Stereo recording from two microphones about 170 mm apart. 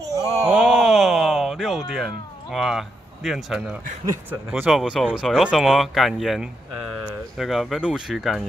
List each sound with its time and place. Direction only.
0.0 s groan: 20° right (ahead or behind)
0.5 s a sound: centre (ahead or behind)
4.3 s speech: 10° right (ahead or behind)